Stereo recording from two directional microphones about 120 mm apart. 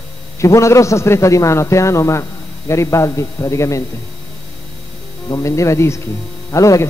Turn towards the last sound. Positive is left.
turn(degrees=25)  # may be behind; listen again after turning